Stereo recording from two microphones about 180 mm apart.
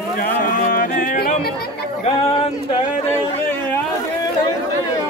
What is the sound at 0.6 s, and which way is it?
Music, 50° left (ahead or behind).